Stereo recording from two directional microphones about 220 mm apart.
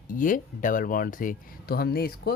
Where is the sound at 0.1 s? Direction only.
35° left (ahead or behind).